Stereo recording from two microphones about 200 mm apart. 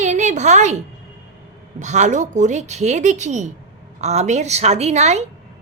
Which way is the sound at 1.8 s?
35° right (ahead or behind).